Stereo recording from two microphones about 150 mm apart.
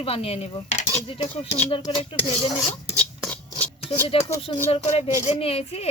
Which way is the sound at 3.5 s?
40° left (ahead or behind).